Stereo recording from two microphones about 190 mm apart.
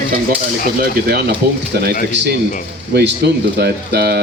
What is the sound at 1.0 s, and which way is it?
Speech, 55° right (ahead or behind).